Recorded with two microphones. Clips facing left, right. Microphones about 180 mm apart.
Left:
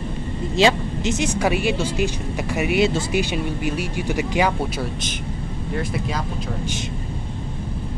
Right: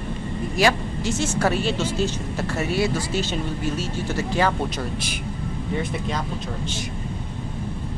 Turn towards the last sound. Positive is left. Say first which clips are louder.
# left 2 dB
turn(degrees=5)  # may be behind; listen again after turning